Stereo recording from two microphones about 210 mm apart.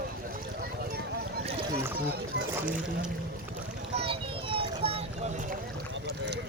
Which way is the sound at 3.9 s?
25° right (ahead or behind).